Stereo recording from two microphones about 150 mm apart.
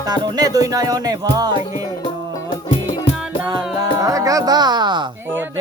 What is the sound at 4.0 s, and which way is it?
Music, 20° right (ahead or behind).